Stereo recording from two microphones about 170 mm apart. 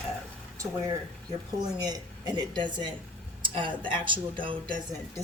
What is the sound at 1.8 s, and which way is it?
Speech, 25° right (ahead or behind).